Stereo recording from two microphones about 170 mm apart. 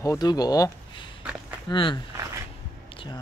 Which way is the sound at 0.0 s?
20° left (ahead or behind).